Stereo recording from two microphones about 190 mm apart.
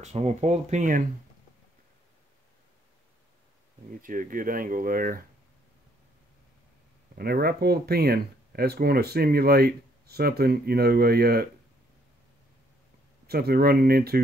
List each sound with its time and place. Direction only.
0.0 s speech: 35° right (ahead or behind)
4.0 s speech: 45° right (ahead or behind)
7.2 s speech: 55° right (ahead or behind)
13.3 s speech: 55° right (ahead or behind)